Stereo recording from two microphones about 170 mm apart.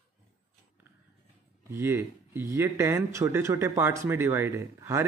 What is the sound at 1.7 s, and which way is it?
Speech, 15° right (ahead or behind).